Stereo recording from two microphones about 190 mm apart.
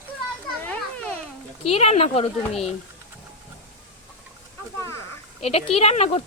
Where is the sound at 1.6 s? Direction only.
30° left (ahead or behind).